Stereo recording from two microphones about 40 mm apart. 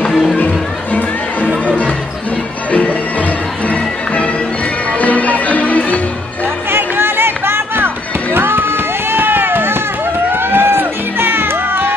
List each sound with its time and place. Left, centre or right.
0.1 s music: centre
1.7 s music: left
4.9 s music: left
6.7 s music: right